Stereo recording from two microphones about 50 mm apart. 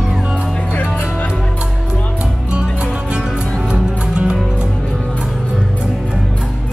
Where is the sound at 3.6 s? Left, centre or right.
Centre.